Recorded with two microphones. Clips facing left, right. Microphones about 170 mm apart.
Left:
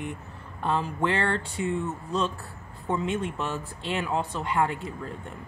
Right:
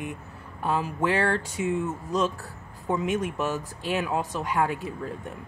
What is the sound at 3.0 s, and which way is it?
Speech, 15° right (ahead or behind).